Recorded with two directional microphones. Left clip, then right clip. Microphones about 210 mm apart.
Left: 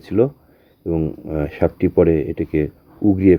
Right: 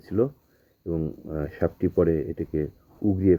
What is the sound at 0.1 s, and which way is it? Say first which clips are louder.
Speech: left 8 dB; 20° left (ahead or behind).